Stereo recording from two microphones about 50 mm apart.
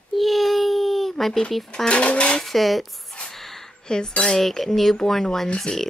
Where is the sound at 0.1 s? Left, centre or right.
Centre.